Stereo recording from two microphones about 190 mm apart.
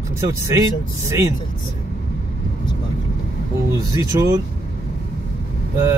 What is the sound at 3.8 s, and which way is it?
Speech, 15° right (ahead or behind).